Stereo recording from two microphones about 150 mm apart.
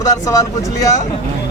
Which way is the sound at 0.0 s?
20° left (ahead or behind).